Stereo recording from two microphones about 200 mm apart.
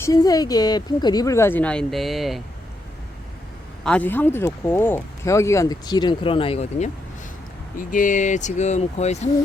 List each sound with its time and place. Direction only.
0.0 s speech: 20° left (ahead or behind); by 2.4 s centre (ahead or behind)
3.8 s speech: 10° left (ahead or behind); by 9.3 s 35° left (ahead or behind)